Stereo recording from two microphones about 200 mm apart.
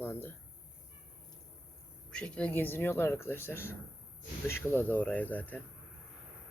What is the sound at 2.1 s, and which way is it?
Speech, 5° left (ahead or behind).